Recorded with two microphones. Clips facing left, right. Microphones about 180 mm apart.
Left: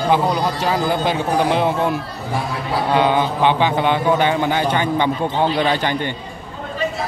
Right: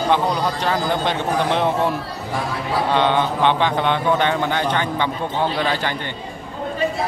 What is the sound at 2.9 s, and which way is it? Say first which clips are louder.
A man's voice: left 2 dB; 10° left (ahead or behind).